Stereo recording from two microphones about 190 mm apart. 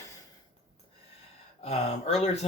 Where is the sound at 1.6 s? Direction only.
35° left (ahead or behind).